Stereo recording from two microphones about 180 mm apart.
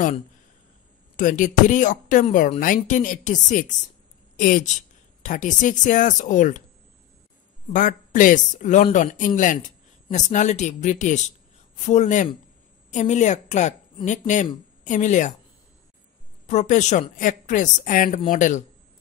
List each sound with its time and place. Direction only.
1.1 s speech: 45° left (ahead or behind)
7.7 s speech: 45° left (ahead or behind)
16.4 s speech: 40° left (ahead or behind)